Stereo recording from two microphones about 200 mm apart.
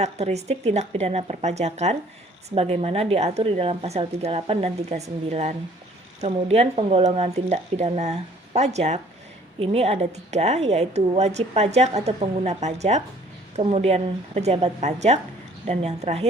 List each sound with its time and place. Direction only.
0.0 s a woman's voice: 35° right (ahead or behind)